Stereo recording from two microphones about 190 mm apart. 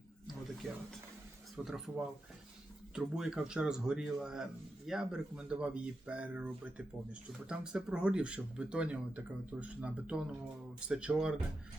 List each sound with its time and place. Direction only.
1.5 s speech: centre (ahead or behind)